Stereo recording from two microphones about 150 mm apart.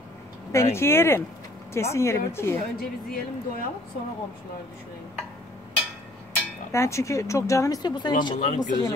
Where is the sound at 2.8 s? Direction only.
80° left.